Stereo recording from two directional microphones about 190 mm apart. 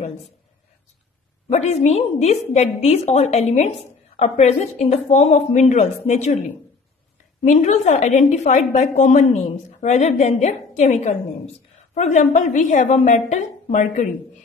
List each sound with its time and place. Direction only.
1.5 s a woman's voice: 35° left (ahead or behind)
7.4 s a woman's voice: 40° left (ahead or behind)